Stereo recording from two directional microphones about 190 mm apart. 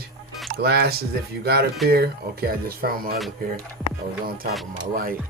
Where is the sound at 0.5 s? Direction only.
55° right (ahead or behind).